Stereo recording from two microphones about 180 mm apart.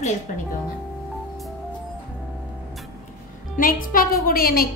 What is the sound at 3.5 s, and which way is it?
A woman's voice, 50° left (ahead or behind).